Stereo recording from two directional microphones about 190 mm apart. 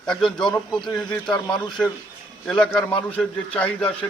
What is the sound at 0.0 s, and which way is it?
Speech, 5° left (ahead or behind).